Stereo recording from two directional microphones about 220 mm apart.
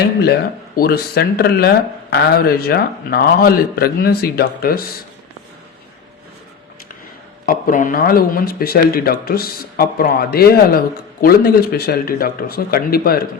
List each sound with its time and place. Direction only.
0.0 s speech: 45° left (ahead or behind)
7.4 s speech: 40° left (ahead or behind)